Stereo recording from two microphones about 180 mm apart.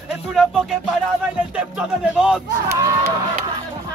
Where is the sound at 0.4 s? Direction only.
Centre (ahead or behind).